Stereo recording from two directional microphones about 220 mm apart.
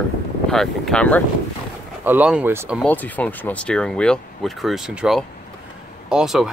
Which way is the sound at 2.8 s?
5° left (ahead or behind).